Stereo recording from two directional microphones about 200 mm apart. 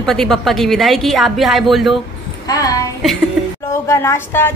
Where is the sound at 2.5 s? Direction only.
20° left (ahead or behind).